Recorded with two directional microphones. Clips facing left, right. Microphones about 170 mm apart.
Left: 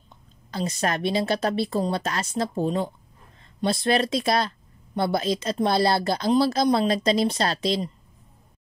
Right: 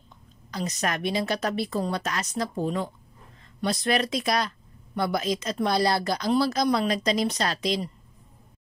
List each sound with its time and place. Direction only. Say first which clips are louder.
0.5 s speech: left 3 dB; 30° left (ahead or behind)